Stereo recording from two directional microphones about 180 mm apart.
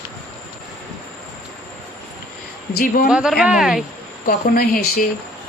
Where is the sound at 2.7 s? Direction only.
55° left (ahead or behind).